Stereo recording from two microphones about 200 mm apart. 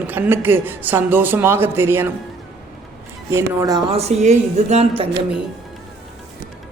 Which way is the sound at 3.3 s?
15° right (ahead or behind).